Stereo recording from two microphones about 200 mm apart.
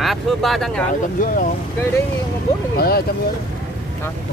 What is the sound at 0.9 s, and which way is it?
Speech, 40° left (ahead or behind).